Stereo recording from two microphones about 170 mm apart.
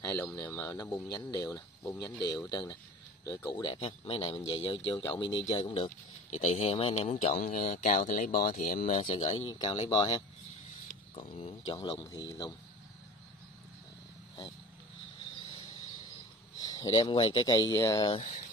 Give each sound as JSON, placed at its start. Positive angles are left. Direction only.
{"t": 0.0, "sound": "speech", "side_deg": 10}
{"t": 5.9, "sound": "speech", "side_deg": 40}
{"t": 9.0, "sound": "speech", "side_deg": 40}
{"t": 11.1, "sound": "speech", "side_deg": 30}
{"t": 16.5, "sound": "speech", "side_deg": 20}